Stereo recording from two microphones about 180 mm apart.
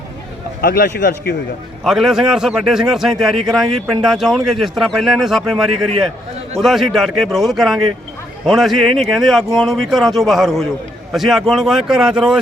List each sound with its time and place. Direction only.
0.6 s a man's voice: 60° left (ahead or behind)
1.8 s a man's voice: centre (ahead or behind)